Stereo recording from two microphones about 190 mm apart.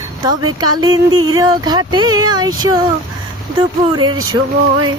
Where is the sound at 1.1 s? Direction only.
90° right.